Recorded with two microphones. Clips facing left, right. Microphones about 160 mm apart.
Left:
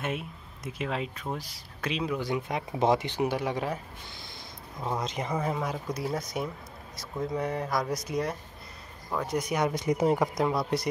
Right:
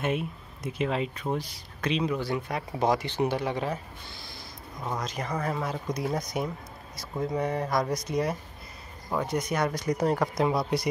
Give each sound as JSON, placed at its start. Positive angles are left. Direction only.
{"t": 0.0, "sound": "speech", "side_deg": 0}
{"t": 2.2, "sound": "speech", "side_deg": 15}
{"t": 3.2, "sound": "speech", "side_deg": 10}
{"t": 5.0, "sound": "speech", "side_deg": 20}
{"t": 9.5, "sound": "speech", "side_deg": 10}
{"t": 10.4, "sound": "speech", "side_deg": 0}